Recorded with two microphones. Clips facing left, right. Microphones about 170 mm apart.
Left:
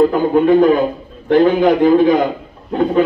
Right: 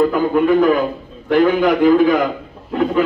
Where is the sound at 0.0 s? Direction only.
30° left (ahead or behind).